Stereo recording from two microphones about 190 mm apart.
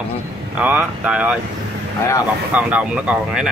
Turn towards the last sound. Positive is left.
turn(degrees=-5)  # may be behind; listen again after turning